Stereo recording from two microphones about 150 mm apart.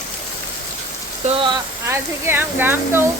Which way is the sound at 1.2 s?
35° right (ahead or behind).